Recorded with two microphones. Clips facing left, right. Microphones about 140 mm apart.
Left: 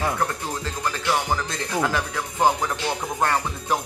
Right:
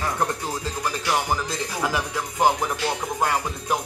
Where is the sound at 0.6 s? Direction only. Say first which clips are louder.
Even; 10° right (ahead or behind).